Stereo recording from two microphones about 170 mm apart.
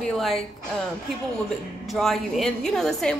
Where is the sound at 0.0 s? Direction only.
Centre (ahead or behind).